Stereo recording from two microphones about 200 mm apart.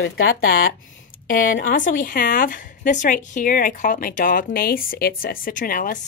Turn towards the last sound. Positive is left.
turn(degrees=45)  # may be behind; listen again after turning